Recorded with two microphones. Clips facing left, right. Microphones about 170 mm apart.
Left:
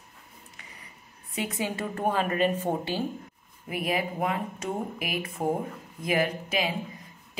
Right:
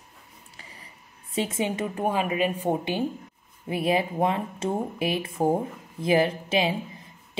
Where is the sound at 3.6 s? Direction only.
30° right (ahead or behind).